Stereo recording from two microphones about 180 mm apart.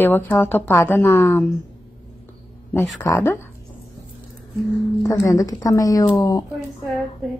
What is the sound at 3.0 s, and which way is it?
Speech, 10° left (ahead or behind).